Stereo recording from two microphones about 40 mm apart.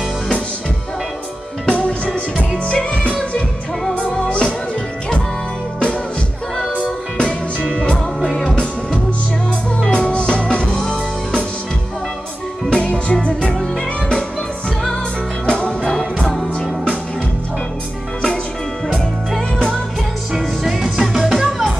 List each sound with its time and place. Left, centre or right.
1.7 s music: left
4.1 s music: left
6.7 s music: left
12.6 s music: left
15.4 s music: left
20.3 s music: centre